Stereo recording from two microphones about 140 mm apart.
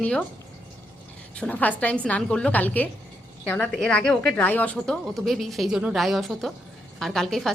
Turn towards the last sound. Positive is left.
turn(degrees=0)  # may be behind; listen again after turning